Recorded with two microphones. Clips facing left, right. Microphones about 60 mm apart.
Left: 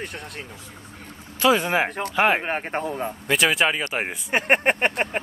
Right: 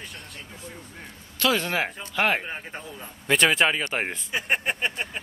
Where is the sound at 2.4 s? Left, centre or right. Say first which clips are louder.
Left 10 dB; left.